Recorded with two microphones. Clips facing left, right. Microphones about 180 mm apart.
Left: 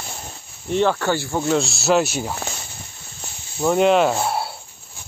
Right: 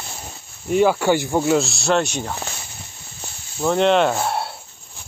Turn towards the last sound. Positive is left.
turn(degrees=5)  # may be behind; listen again after turning